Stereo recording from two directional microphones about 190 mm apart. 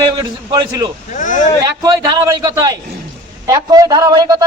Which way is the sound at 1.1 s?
40° left (ahead or behind).